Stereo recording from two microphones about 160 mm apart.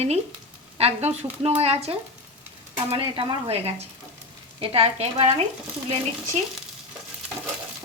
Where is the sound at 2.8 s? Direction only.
35° right (ahead or behind).